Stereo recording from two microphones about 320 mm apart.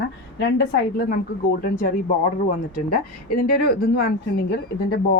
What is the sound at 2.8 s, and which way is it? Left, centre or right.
Speech, left.